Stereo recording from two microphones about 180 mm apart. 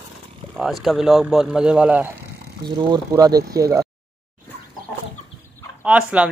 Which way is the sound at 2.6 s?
20° right (ahead or behind).